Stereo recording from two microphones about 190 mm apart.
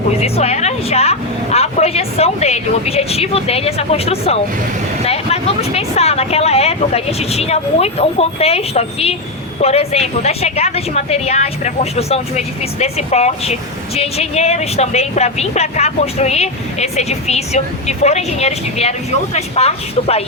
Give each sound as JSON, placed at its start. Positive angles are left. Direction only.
{"t": 0.2, "sound": "a woman's voice", "side_deg": 35}